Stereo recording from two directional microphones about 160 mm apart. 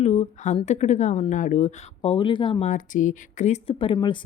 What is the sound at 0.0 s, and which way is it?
Speech, 40° left (ahead or behind).